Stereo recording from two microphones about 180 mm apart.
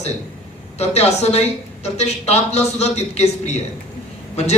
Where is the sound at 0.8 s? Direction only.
35° left (ahead or behind).